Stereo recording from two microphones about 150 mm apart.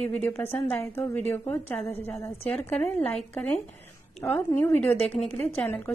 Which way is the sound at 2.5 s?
5° left (ahead or behind).